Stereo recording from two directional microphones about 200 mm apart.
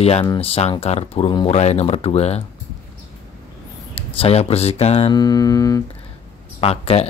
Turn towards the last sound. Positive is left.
turn(degrees=30)  # may be behind; listen again after turning